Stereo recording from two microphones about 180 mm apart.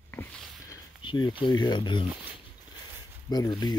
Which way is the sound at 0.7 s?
25° left (ahead or behind).